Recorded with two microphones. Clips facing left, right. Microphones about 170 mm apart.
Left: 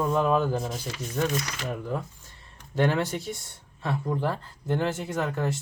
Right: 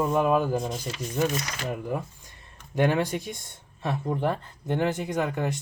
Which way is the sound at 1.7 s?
15° right (ahead or behind).